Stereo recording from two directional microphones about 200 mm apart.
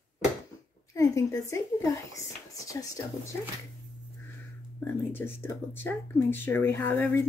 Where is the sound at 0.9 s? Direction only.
15° left (ahead or behind).